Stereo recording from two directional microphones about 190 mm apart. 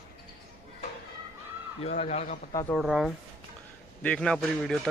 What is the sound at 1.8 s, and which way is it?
Speech, 35° left (ahead or behind).